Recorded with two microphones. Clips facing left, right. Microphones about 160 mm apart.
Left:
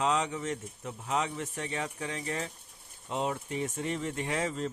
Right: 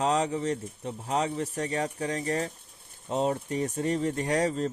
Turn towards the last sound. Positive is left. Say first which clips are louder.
# right 6 dB
turn(degrees=-35)  # may be behind; listen again after turning